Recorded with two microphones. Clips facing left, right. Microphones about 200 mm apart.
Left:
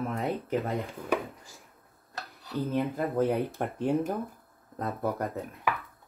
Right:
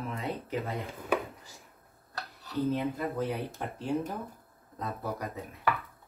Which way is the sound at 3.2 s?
55° left (ahead or behind).